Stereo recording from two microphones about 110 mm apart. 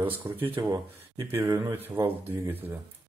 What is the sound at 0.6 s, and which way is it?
Speech, 35° right (ahead or behind).